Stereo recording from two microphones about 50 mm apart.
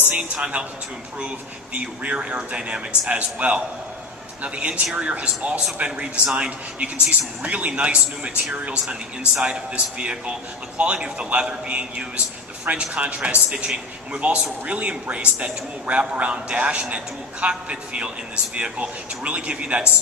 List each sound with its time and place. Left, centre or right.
0.1 s a man's voice: centre
1.7 s a man's voice: right